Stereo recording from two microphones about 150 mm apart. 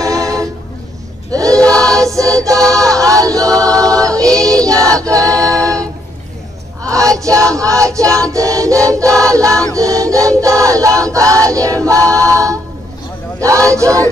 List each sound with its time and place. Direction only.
0.0 s a sound: 20° right (ahead or behind)
1.3 s choir: 20° right (ahead or behind)
1.6 s choir: 5° left (ahead or behind)
2.0 s choir: 20° right (ahead or behind)
4.0 s music: 20° right (ahead or behind)
4.6 s choir: 20° right (ahead or behind)
6.9 s music: 20° right (ahead or behind)
8.2 s choir: 20° right (ahead or behind)
12.1 s a capella: 20° right (ahead or behind)
13.4 s choir: 20° right (ahead or behind)